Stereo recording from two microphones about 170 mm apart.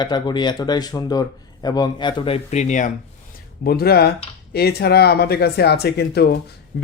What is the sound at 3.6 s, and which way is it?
Speech, 65° left (ahead or behind).